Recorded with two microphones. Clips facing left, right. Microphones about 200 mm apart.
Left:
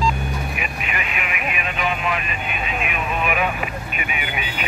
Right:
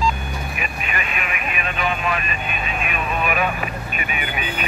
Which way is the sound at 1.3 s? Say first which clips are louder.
Left 2 dB; 15° left (ahead or behind).